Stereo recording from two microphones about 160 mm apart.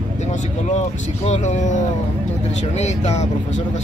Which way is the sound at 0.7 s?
45° left (ahead or behind).